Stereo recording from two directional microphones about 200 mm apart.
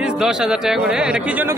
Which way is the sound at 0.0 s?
5° right (ahead or behind).